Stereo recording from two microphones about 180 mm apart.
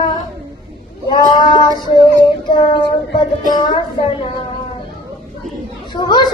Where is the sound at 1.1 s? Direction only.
25° left (ahead or behind).